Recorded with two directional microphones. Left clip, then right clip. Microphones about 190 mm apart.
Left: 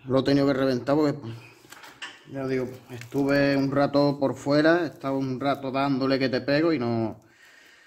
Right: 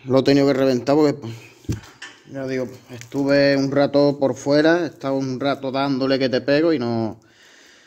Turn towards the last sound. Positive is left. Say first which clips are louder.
# right 4 dB
turn(degrees=-25)  # may be behind; listen again after turning